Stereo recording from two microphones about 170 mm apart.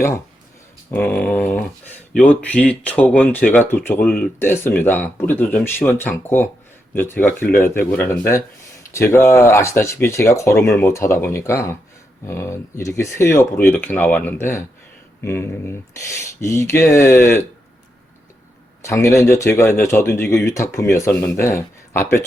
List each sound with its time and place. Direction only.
0.9 s speech: 10° left (ahead or behind)
18.8 s speech: 15° left (ahead or behind)